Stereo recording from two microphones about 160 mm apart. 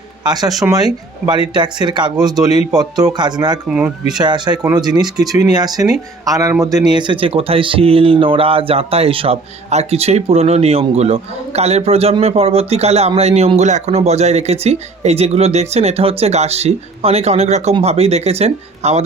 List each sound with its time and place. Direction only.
0.3 s speech: 25° right (ahead or behind)
3.7 s speech: 5° right (ahead or behind)
4.2 s speech: 25° right (ahead or behind); by 19.0 s 40° right (ahead or behind)